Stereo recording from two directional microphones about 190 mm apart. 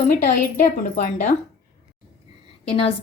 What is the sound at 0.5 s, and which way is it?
Speech, 40° left (ahead or behind).